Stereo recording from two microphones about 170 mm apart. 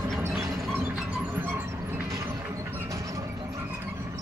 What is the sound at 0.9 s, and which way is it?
Music, 10° right (ahead or behind).